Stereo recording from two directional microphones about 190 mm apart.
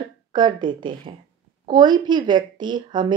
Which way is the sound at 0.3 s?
25° right (ahead or behind).